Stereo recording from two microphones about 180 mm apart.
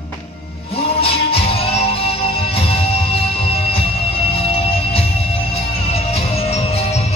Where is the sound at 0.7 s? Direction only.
30° left (ahead or behind).